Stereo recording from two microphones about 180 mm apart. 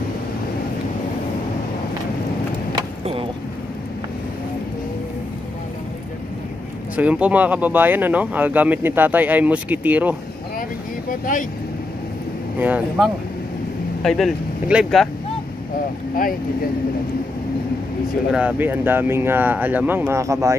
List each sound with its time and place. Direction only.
7.0 s speech: 5° right (ahead or behind)
11.1 s speech: 50° left (ahead or behind)
12.5 s speech: 10° right (ahead or behind)
18.3 s speech: 10° right (ahead or behind)